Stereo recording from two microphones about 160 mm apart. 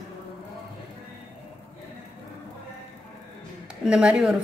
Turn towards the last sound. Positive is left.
turn(degrees=-5)  # may be behind; listen again after turning